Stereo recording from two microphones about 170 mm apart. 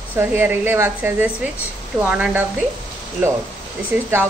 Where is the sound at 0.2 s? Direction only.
15° right (ahead or behind).